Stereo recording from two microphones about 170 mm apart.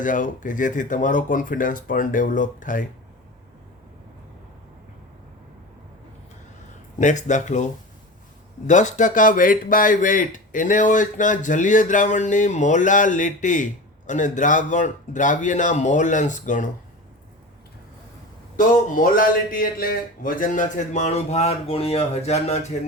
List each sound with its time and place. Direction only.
0.0 s speech: 50° left (ahead or behind)
7.0 s speech: 45° left (ahead or behind)
18.5 s speech: 55° left (ahead or behind)